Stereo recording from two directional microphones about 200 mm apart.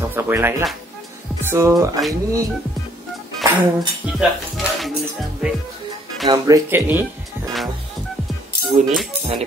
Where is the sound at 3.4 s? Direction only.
20° right (ahead or behind).